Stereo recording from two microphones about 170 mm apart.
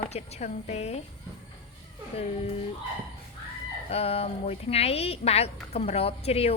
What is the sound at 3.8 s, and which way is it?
A woman's voice, 35° left (ahead or behind).